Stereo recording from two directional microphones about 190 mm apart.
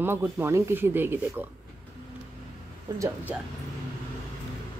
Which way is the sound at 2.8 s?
15° right (ahead or behind).